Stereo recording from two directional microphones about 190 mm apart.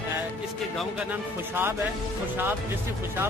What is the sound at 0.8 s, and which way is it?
Speech, 5° right (ahead or behind).